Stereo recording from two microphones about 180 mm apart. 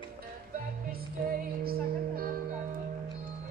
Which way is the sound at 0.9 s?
55° right (ahead or behind).